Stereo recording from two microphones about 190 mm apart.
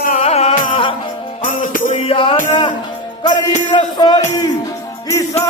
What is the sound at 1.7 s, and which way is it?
Music, 40° left (ahead or behind).